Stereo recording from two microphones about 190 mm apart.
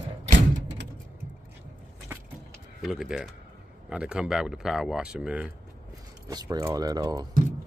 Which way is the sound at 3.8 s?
5° right (ahead or behind).